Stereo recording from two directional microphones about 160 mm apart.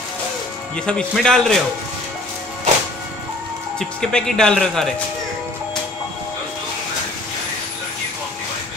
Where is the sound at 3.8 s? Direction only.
5° left (ahead or behind).